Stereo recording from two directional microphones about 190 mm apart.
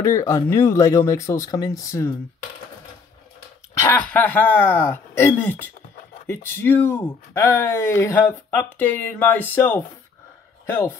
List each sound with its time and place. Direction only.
0.0 s speech: 15° left (ahead or behind)
3.7 s speech: 10° left (ahead or behind)